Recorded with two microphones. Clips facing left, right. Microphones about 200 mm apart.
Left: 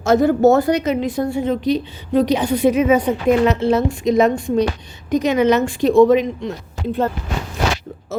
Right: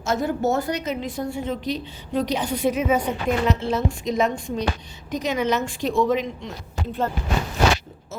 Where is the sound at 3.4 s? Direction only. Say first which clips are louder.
Left 7 dB; 65° left (ahead or behind).